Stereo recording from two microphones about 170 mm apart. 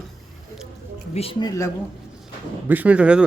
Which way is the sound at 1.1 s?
35° left (ahead or behind).